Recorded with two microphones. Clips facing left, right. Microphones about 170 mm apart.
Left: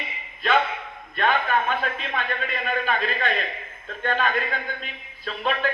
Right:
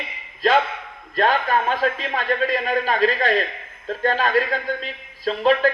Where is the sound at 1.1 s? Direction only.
35° right (ahead or behind).